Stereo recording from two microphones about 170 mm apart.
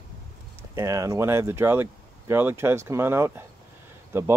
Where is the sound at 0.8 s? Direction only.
20° right (ahead or behind).